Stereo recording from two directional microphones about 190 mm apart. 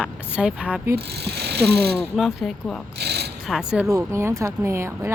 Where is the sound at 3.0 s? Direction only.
60° right (ahead or behind).